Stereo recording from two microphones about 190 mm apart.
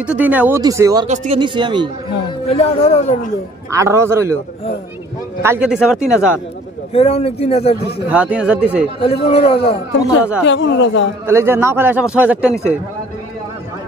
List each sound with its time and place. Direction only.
0.0 s speech: 10° right (ahead or behind)
1.0 s speech: 40° right (ahead or behind)
1.4 s speech: 25° right (ahead or behind)
2.4 s speech: 35° left (ahead or behind)
3.7 s speech: 15° right (ahead or behind)
5.4 s speech: 10° right (ahead or behind)
6.9 s speech: 35° left (ahead or behind)
8.1 s speech: 5° right (ahead or behind)
9.0 s speech: 30° left (ahead or behind)
10.4 s speech: 70° left (ahead or behind)
11.2 s speech: 15° right (ahead or behind)